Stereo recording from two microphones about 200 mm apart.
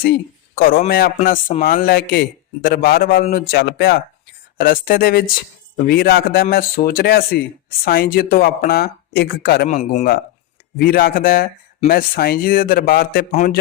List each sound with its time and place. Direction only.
0.0 s speech: 50° left (ahead or behind)
9.6 s a man's voice: 35° left (ahead or behind)
10.8 s a man's voice: 50° left (ahead or behind)